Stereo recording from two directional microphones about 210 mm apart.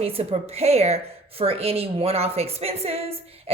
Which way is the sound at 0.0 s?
30° right (ahead or behind).